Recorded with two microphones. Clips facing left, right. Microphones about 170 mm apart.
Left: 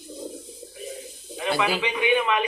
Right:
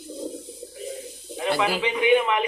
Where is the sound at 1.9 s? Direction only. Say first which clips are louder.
Right 3 dB; 20° right (ahead or behind).